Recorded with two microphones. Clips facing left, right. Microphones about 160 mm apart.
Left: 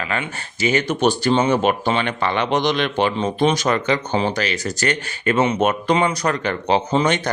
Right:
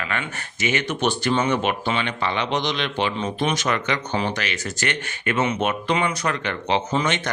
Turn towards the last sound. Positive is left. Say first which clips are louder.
# left 4 dB
turn(degrees=35)  # may be behind; listen again after turning